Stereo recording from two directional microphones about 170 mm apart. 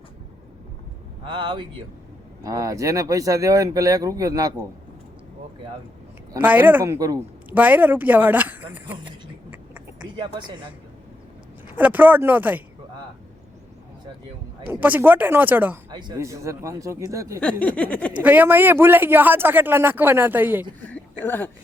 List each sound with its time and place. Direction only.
1.2 s speech: 30° right (ahead or behind)
6.4 s a man's voice: 10° right (ahead or behind)
8.9 s a sound: 30° right (ahead or behind)
10.0 s speech: 25° right (ahead or behind)
11.7 s a man's voice: 10° right (ahead or behind)
14.7 s a man's voice: 10° right (ahead or behind)
15.9 s a man's voice: 25° right (ahead or behind)
17.6 s a sound: 10° left (ahead or behind)
18.1 s a man's voice: 10° right (ahead or behind)
20.8 s speech: 10° left (ahead or behind)